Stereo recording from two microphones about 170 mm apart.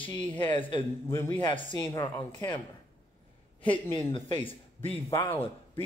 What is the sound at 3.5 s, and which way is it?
Speech, 30° left (ahead or behind).